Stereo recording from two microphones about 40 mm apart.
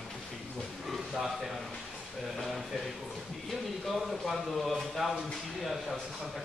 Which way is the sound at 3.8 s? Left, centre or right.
Centre.